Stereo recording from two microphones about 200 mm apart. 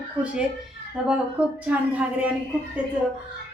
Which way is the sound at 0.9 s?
5° right (ahead or behind).